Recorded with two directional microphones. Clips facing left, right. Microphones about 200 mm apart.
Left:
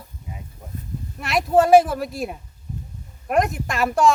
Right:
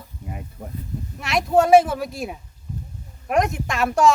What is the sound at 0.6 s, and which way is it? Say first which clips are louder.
Speech: right 6 dB; 50° right (ahead or behind).